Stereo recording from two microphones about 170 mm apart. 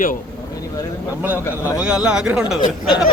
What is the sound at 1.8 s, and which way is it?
Speech, 5° right (ahead or behind).